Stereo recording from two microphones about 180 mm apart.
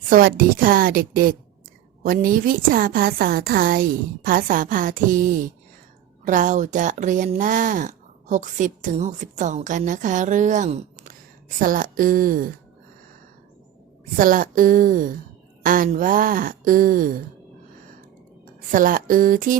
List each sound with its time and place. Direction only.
0.1 s speech: 55° right (ahead or behind)
14.2 s speech: 50° right (ahead or behind)
18.7 s speech: 50° right (ahead or behind)